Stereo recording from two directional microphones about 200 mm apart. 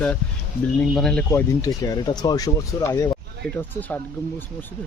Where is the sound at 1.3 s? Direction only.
15° left (ahead or behind).